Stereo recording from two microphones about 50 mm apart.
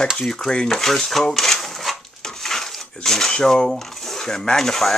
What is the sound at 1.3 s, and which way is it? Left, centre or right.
Dishes, centre.